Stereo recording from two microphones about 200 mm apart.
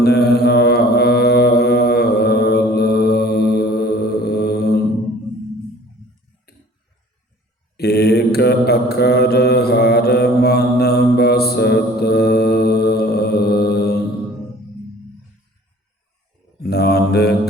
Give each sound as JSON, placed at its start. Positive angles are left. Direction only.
{"t": 0.0, "sound": "mantra", "side_deg": 55}
{"t": 7.8, "sound": "mantra", "side_deg": 55}
{"t": 16.6, "sound": "mantra", "side_deg": 55}